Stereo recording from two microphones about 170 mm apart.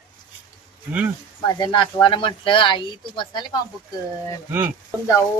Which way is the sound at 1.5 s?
25° left (ahead or behind).